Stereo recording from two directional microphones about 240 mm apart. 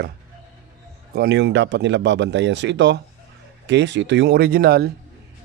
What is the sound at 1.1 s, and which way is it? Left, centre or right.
Speech, right.